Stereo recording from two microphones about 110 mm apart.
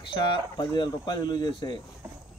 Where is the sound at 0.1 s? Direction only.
45° left (ahead or behind).